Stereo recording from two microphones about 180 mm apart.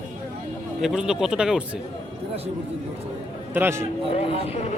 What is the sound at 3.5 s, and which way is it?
Speech, 15° right (ahead or behind).